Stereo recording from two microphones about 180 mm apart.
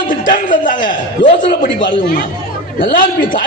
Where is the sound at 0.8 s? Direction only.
25° left (ahead or behind).